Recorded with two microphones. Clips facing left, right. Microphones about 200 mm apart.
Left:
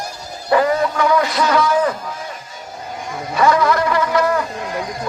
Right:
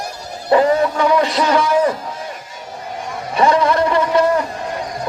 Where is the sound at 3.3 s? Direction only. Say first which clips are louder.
Right 1 dB; 30° right (ahead or behind).